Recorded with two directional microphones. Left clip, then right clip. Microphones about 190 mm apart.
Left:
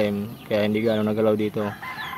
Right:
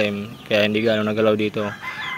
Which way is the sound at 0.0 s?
20° left (ahead or behind).